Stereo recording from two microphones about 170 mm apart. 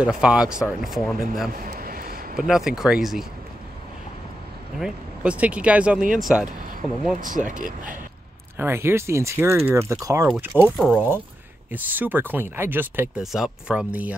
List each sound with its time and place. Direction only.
0.0 s speech: 5° right (ahead or behind)
1.6 s a sound: 60° right (ahead or behind)
2.3 s speech: 5° right (ahead or behind)
4.7 s speech: 5° right (ahead or behind)
7.2 s speech: 50° right (ahead or behind)
8.5 s speech: 15° right (ahead or behind)
10.8 s speech: centre (ahead or behind)
13.2 s speech: centre (ahead or behind)